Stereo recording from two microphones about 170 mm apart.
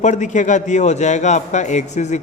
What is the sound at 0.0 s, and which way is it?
A man's voice, 45° left (ahead or behind).